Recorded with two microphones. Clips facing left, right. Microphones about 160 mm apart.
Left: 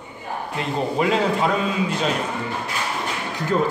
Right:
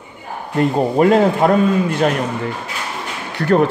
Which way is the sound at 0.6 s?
50° right (ahead or behind).